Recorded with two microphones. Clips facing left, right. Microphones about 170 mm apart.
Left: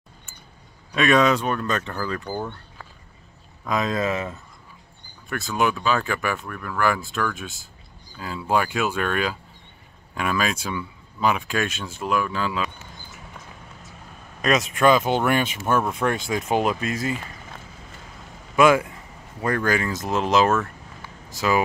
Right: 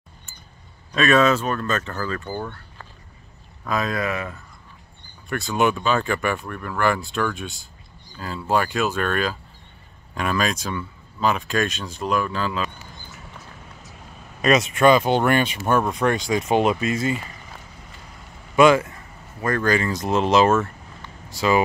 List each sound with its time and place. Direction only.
0.9 s speech: 15° left (ahead or behind)
3.6 s speech: 20° left (ahead or behind)
5.3 s speech: centre (ahead or behind)
14.4 s speech: centre (ahead or behind)
18.6 s speech: 10° left (ahead or behind)